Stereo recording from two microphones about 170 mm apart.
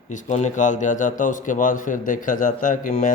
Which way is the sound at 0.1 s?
45° left (ahead or behind).